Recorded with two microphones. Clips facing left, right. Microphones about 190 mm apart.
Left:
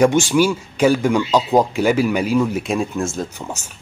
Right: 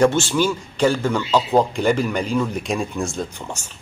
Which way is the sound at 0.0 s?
10° left (ahead or behind).